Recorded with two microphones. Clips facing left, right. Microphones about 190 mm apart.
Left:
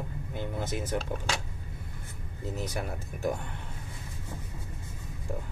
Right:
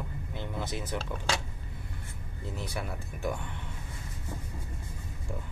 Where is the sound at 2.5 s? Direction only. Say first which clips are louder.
Left 2 dB; 45° left (ahead or behind).